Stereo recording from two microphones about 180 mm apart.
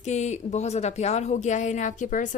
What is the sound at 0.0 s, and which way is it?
A woman's voice, 40° left (ahead or behind).